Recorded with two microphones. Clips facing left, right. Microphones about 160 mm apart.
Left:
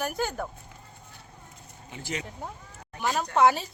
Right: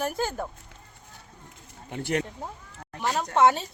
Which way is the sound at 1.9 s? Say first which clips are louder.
Right 8 dB; 60° right (ahead or behind).